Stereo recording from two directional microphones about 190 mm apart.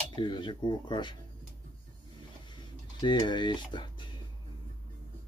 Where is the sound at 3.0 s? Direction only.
25° left (ahead or behind).